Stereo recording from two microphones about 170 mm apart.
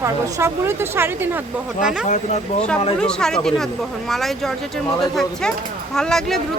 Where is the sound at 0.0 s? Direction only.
15° right (ahead or behind).